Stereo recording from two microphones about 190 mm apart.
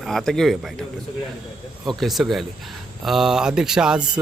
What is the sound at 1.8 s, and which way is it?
A man's voice, centre (ahead or behind).